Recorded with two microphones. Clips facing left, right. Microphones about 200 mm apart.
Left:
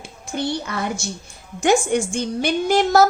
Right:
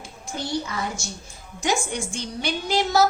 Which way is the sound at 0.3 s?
65° left (ahead or behind).